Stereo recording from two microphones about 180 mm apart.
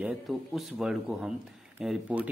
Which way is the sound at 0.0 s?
Centre (ahead or behind).